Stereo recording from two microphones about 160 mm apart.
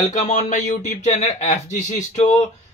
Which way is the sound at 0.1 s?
50° left (ahead or behind).